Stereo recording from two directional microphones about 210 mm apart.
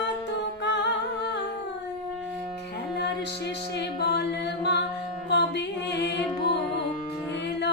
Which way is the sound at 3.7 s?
50° left (ahead or behind).